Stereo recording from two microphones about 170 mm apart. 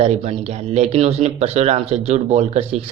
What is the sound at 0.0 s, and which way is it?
Speech, 35° right (ahead or behind).